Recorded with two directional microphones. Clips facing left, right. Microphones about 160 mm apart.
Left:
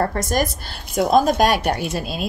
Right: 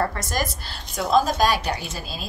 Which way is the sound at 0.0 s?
50° left (ahead or behind).